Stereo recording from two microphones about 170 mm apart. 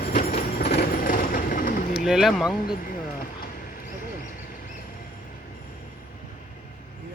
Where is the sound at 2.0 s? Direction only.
Centre (ahead or behind).